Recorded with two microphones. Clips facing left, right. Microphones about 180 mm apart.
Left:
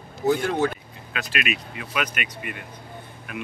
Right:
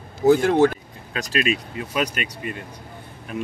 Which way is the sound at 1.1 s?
35° right (ahead or behind).